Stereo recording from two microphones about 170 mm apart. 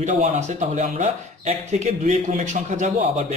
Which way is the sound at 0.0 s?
45° right (ahead or behind).